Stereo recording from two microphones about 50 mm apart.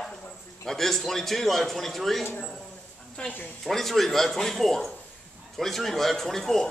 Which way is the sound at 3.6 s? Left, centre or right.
Centre.